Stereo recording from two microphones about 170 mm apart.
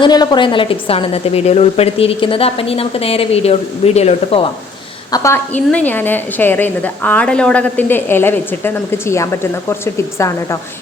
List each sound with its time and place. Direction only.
0.0 s a woman's voice: 25° left (ahead or behind)
5.1 s a woman's voice: 15° left (ahead or behind)